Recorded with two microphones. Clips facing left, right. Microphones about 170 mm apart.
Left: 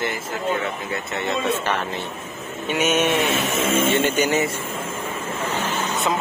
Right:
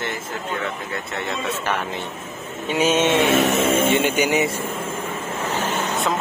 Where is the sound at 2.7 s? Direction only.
30° right (ahead or behind).